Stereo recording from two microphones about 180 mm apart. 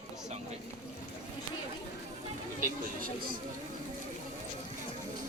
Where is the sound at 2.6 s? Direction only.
50° right (ahead or behind).